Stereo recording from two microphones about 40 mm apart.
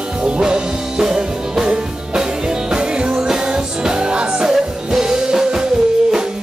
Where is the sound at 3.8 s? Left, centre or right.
Centre.